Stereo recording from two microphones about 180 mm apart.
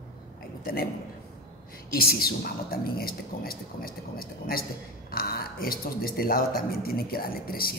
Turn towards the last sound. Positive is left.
turn(degrees=55)  # may be behind; listen again after turning